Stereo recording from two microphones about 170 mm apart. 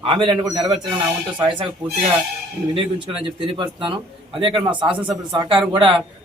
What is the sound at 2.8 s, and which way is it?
A man's voice, 30° right (ahead or behind).